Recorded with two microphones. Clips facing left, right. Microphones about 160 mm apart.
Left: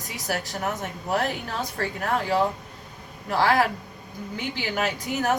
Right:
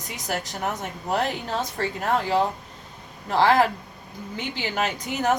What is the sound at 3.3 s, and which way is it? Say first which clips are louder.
Speech: right 2 dB; 20° right (ahead or behind).